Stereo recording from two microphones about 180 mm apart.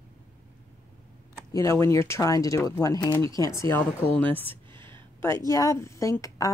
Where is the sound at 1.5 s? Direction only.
20° left (ahead or behind).